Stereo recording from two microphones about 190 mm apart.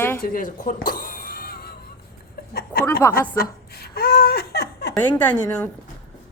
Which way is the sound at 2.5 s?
50° left (ahead or behind).